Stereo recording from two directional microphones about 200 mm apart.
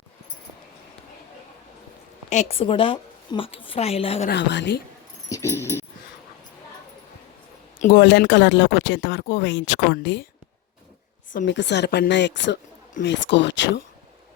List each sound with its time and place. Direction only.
2.3 s a woman's voice: 35° left (ahead or behind)
4.3 s speech: 60° left (ahead or behind)
5.3 s dog: 15° left (ahead or behind)
7.8 s speech: 45° left (ahead or behind)
8.0 s speech: 60° left (ahead or behind)
11.4 s speech: 60° left (ahead or behind)